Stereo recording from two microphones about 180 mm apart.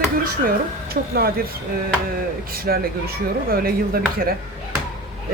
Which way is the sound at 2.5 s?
55° right (ahead or behind).